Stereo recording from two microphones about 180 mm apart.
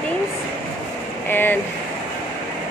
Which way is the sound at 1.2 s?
10° left (ahead or behind).